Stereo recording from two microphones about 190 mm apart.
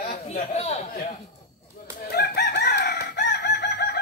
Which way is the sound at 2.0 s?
55° left (ahead or behind).